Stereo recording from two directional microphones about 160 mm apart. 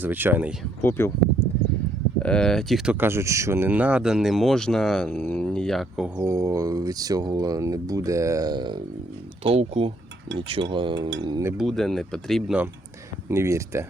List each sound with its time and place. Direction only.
0.0 s speech: 10° right (ahead or behind)
0.8 s speech: 15° left (ahead or behind)
2.2 s speech: 5° left (ahead or behind)
6.1 s speech: 20° right (ahead or behind)
9.4 s speech: 40° right (ahead or behind)
11.5 s speech: centre (ahead or behind)
13.2 s speech: 15° right (ahead or behind)